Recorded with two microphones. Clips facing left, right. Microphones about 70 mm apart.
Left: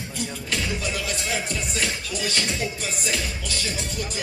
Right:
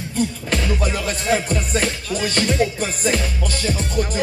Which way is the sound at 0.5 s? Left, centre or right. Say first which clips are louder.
Right 6 dB; right.